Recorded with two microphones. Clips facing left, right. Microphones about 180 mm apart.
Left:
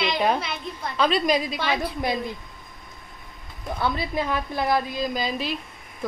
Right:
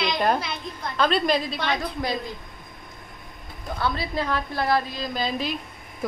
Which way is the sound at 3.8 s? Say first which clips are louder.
Left 1 dB; 20° left (ahead or behind).